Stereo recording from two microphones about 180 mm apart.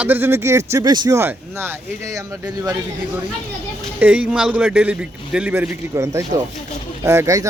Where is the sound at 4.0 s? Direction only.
5° right (ahead or behind).